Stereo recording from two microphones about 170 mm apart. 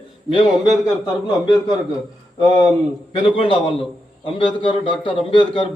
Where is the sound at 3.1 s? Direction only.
30° left (ahead or behind).